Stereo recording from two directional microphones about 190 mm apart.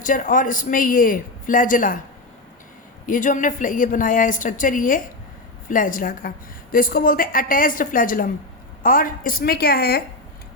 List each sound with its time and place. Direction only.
0.0 s a woman's voice: 45° left (ahead or behind)
3.1 s a woman's voice: 40° left (ahead or behind)